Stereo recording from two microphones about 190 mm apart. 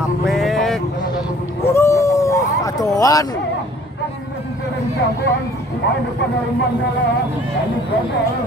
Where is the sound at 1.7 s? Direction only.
15° left (ahead or behind).